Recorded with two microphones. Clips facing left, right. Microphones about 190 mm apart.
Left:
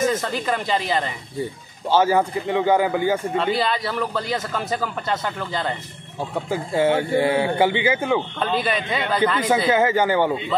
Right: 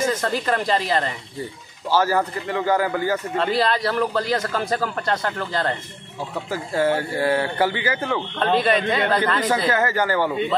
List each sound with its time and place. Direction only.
0.0 s a man's voice: centre (ahead or behind)
1.9 s speech: 25° left (ahead or behind)
3.3 s a man's voice: centre (ahead or behind)
6.5 s speech: 20° left (ahead or behind)
8.0 s a man's voice: 10° left (ahead or behind)
9.4 s speech: 25° left (ahead or behind)